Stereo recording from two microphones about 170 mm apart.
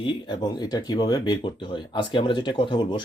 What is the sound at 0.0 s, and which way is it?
Speech, 30° left (ahead or behind).